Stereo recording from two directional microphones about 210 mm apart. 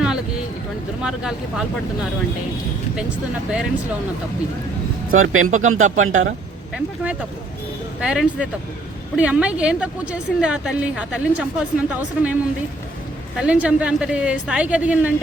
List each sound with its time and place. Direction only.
0.0 s vehicle: 5° right (ahead or behind)
1.0 s a woman's voice: 5° right (ahead or behind)
5.1 s speech: 75° right (ahead or behind)
6.7 s a woman's voice: 5° right (ahead or behind)